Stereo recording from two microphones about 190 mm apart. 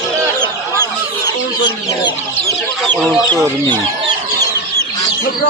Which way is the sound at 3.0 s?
Centre (ahead or behind).